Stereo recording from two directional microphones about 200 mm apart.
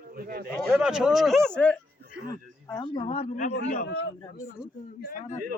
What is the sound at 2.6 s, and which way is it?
Speech, 20° left (ahead or behind).